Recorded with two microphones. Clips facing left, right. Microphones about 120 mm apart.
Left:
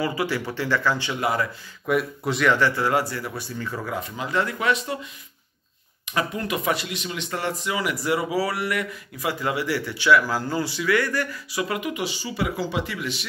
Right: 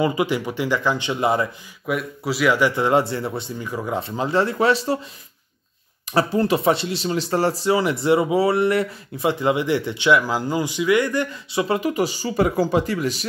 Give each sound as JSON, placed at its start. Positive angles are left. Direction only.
{"t": 0.0, "sound": "speech", "side_deg": -20}
{"t": 1.9, "sound": "speech", "side_deg": -5}
{"t": 3.9, "sound": "speech", "side_deg": -30}
{"t": 6.1, "sound": "speech", "side_deg": -30}